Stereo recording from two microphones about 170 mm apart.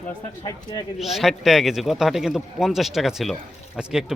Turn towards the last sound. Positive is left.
turn(degrees=-5)  # may be behind; listen again after turning